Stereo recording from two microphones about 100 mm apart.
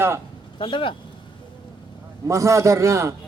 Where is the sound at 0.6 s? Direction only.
55° left (ahead or behind).